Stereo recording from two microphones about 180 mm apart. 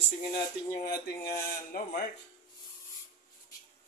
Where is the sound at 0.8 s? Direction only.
60° left (ahead or behind).